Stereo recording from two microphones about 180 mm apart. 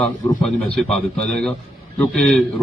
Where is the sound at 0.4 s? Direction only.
Centre (ahead or behind).